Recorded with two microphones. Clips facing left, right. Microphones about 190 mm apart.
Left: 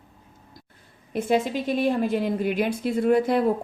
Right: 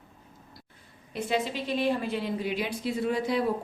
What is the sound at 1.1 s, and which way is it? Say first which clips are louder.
A woman's voice: left 6 dB; 50° left (ahead or behind).